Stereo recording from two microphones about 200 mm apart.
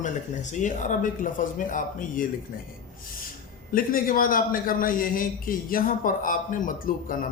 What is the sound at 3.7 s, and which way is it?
Speech, 45° left (ahead or behind).